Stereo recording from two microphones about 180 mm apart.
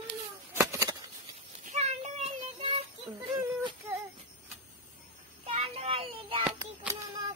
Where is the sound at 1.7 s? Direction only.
40° right (ahead or behind).